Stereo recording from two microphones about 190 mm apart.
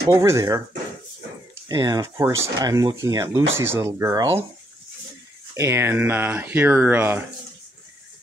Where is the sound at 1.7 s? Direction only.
20° right (ahead or behind).